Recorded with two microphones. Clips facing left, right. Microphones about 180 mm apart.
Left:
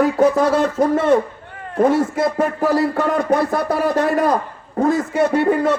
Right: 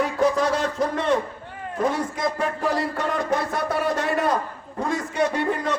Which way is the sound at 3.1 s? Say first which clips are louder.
Left 5 dB; 55° left (ahead or behind).